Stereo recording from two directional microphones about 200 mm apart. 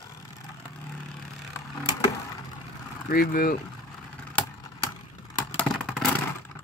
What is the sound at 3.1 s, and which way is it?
Speech, 45° left (ahead or behind).